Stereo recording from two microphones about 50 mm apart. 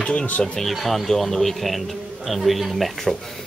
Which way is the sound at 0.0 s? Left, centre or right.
Centre.